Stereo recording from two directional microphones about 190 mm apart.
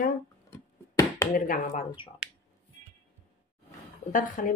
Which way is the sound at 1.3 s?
45° left (ahead or behind).